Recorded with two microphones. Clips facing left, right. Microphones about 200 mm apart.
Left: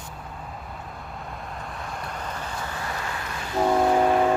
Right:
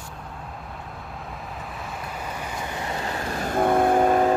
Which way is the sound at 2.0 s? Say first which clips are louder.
Right 1 dB; 5° right (ahead or behind).